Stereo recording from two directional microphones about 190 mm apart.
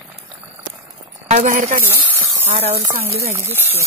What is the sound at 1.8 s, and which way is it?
Snake, 10° right (ahead or behind).